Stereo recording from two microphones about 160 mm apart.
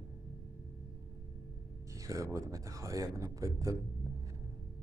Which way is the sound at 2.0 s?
20° right (ahead or behind).